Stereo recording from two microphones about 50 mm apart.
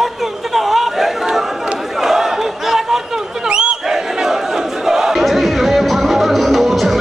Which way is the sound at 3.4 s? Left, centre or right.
Centre.